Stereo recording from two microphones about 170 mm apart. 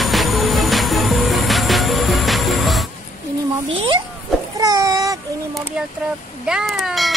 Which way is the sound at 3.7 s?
30° right (ahead or behind).